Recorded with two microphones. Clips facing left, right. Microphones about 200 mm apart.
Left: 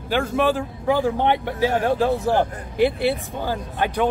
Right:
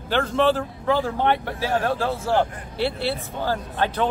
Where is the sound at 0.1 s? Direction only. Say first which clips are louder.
Even; 10° left (ahead or behind).